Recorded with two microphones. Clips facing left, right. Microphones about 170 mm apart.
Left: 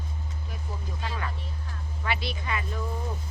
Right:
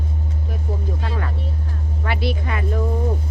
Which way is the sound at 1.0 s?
50° right (ahead or behind).